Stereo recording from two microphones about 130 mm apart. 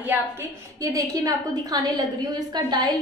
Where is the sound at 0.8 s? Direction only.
25° right (ahead or behind).